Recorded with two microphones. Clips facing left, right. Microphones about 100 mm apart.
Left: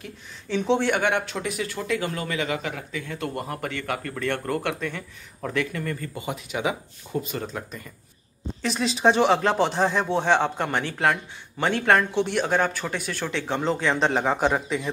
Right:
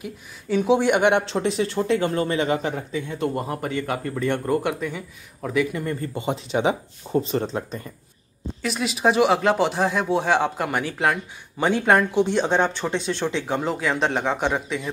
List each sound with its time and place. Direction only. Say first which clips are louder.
0.0 s speech: right 5 dB; 10° right (ahead or behind); by 7.9 s 30° right (ahead or behind)
8.6 s speech: even; 5° right (ahead or behind)